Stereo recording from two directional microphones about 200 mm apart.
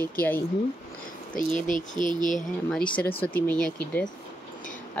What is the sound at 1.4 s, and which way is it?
Speech, 40° left (ahead or behind).